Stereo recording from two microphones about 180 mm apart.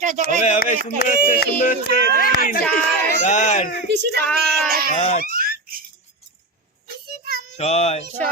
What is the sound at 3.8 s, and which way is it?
Speech, 70° right (ahead or behind).